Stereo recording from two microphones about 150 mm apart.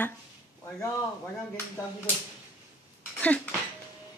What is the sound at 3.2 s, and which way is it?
Speech, 10° left (ahead or behind).